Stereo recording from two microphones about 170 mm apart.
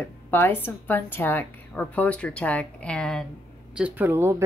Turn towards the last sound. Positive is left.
turn(degrees=-15)  # may be behind; listen again after turning